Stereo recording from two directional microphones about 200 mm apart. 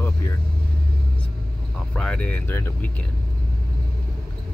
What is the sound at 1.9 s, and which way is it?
Speech, 5° left (ahead or behind).